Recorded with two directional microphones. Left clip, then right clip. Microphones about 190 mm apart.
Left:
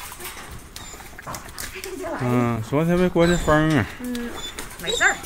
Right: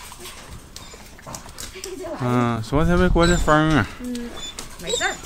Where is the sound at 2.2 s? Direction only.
5° right (ahead or behind).